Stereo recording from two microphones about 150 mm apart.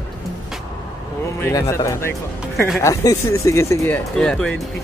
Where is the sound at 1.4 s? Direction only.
20° left (ahead or behind).